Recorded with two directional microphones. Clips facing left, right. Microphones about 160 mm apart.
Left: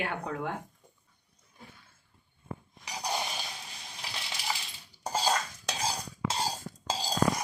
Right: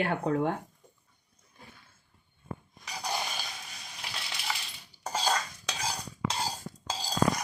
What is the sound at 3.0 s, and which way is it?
Dishes, 20° left (ahead or behind).